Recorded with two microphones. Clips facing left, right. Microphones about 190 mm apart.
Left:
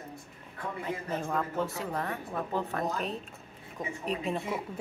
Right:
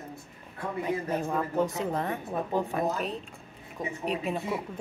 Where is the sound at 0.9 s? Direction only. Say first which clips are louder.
Right 4 dB; 15° right (ahead or behind).